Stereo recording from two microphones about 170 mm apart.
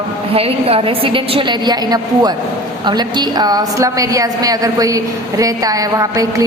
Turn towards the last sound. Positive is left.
turn(degrees=-20)  # may be behind; listen again after turning